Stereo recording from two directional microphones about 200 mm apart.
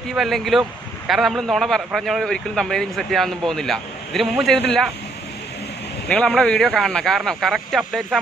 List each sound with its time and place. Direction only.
0.1 s speech: centre (ahead or behind)
6.0 s speech: 5° left (ahead or behind)